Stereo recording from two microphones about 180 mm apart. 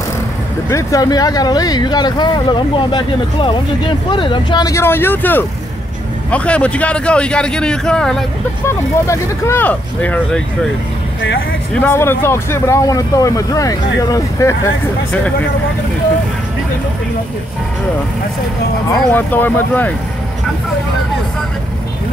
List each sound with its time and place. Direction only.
0.7 s a man's voice: 20° left (ahead or behind)
8.6 s speech: 15° left (ahead or behind)
11.7 s speech: 10° left (ahead or behind)
19.1 s speech: 10° left (ahead or behind)